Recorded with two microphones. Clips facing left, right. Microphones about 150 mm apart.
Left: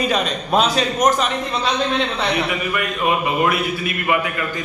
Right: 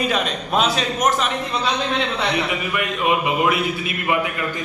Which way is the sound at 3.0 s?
20° right (ahead or behind).